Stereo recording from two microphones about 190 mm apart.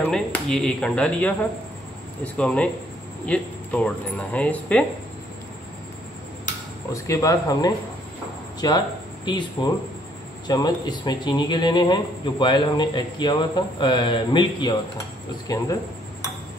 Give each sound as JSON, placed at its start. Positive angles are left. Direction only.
{"t": 0.0, "sound": "speech", "side_deg": 5}
{"t": 6.9, "sound": "speech", "side_deg": 15}